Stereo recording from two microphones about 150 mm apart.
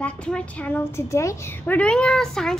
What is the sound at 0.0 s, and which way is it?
A woman's voice, 10° left (ahead or behind).